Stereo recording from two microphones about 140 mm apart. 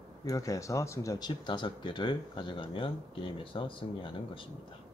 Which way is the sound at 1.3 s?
35° left (ahead or behind).